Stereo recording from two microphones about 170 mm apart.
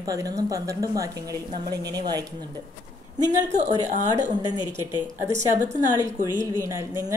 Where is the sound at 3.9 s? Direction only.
45° right (ahead or behind).